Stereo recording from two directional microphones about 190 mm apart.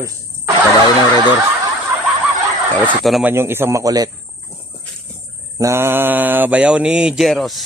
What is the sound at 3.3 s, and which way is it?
Mantra, 10° right (ahead or behind).